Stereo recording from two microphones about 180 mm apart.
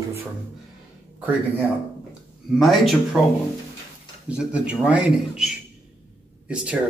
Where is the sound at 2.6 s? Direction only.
Centre (ahead or behind).